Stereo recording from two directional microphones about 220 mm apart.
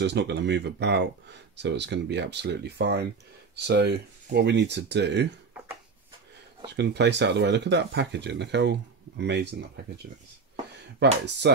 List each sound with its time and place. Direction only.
0.0 s speech: 50° right (ahead or behind)
6.6 s speech: 50° right (ahead or behind)
11.0 s speech: 50° right (ahead or behind)